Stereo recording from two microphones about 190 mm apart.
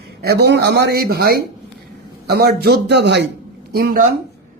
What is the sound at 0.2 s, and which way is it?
Speech, 60° right (ahead or behind).